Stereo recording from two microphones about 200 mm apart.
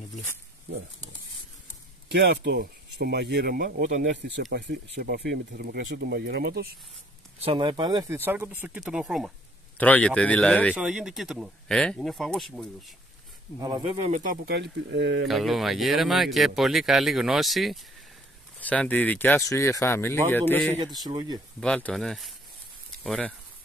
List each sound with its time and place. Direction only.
2.0 s speech: 55° right (ahead or behind); by 4.0 s 40° right (ahead or behind)
4.0 s speech: 60° right (ahead or behind)
7.4 s speech: 25° right (ahead or behind); by 10.7 s 5° left (ahead or behind)
10.7 s speech: 5° right (ahead or behind)
13.6 s speech: 20° right (ahead or behind); by 15.2 s 60° right (ahead or behind)
15.2 s speech: centre (ahead or behind)
20.7 s speech: 20° right (ahead or behind)
21.5 s speech: 5° left (ahead or behind)